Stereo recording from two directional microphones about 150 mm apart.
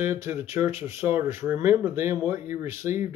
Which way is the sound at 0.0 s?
20° right (ahead or behind).